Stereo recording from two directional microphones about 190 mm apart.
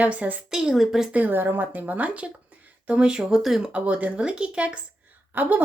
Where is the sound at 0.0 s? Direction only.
5° right (ahead or behind).